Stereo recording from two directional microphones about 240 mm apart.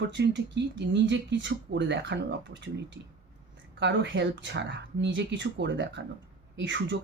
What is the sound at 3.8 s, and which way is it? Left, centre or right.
Speech, right.